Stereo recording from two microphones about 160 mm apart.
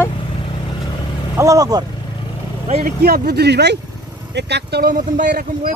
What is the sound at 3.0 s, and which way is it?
Speech, 75° right (ahead or behind).